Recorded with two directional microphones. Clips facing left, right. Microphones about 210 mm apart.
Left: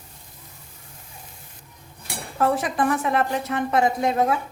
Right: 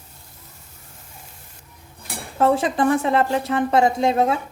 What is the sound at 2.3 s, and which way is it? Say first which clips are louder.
A woman's voice: right 4 dB; 25° right (ahead or behind).